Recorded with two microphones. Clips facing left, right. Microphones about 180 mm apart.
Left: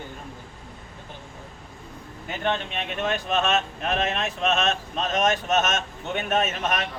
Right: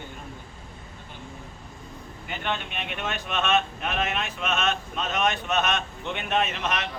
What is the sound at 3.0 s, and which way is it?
Speech, 40° left (ahead or behind).